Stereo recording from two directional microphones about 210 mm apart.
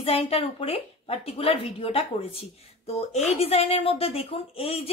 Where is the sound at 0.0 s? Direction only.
25° left (ahead or behind).